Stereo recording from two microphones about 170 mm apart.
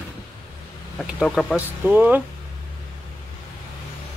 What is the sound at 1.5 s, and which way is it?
Speech, 10° right (ahead or behind).